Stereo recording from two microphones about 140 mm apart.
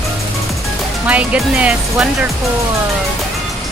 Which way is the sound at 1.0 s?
10° right (ahead or behind).